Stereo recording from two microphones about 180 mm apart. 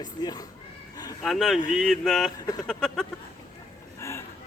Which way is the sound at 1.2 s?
Centre (ahead or behind).